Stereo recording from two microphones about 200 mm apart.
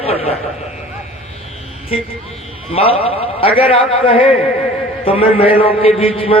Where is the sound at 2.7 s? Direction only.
30° left (ahead or behind).